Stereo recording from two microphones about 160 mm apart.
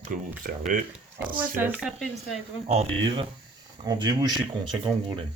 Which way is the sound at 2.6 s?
40° right (ahead or behind).